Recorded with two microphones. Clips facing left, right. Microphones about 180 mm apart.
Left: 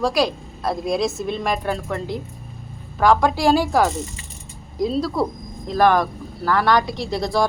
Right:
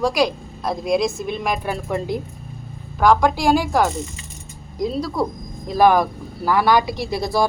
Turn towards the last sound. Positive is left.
turn(degrees=-5)  # may be behind; listen again after turning